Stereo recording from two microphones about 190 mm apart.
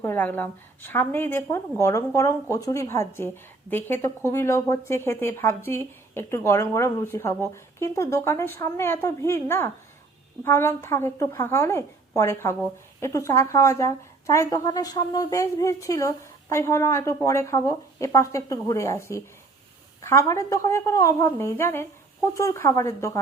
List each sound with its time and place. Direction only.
0.0 s a woman's voice: 10° left (ahead or behind)